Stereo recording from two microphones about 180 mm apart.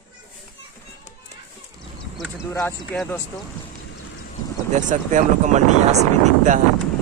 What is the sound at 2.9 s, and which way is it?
Speech, 5° left (ahead or behind).